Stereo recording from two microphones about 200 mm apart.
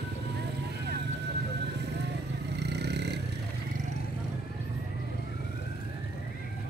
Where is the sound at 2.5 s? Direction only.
55° right (ahead or behind).